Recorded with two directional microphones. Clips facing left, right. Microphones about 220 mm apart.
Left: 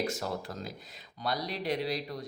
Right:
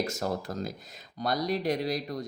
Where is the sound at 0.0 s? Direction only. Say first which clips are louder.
Right 3 dB; 45° right (ahead or behind).